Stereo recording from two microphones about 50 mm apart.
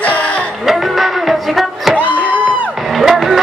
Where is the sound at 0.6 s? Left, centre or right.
Centre.